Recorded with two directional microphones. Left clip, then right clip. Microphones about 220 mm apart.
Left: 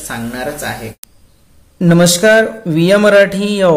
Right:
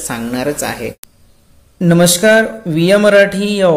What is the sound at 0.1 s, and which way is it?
Speech, 35° right (ahead or behind).